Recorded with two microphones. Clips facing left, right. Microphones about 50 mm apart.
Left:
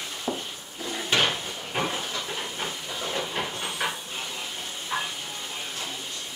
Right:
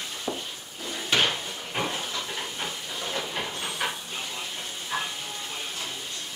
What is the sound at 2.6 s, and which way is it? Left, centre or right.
Steam, centre.